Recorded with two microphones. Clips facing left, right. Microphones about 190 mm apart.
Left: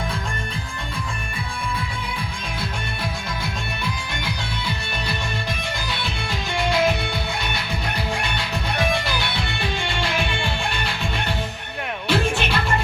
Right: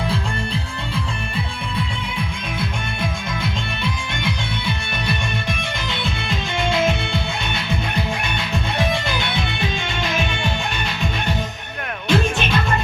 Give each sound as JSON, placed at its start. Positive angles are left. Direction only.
{"t": 6.3, "sound": "music", "side_deg": -20}